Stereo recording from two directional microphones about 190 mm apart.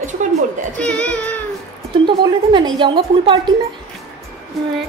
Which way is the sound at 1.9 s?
25° right (ahead or behind).